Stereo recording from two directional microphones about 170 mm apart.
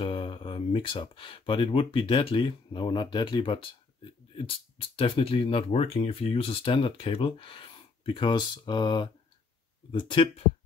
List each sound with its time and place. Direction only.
0.0 s speech: 30° left (ahead or behind)
4.7 s speech: 30° left (ahead or behind)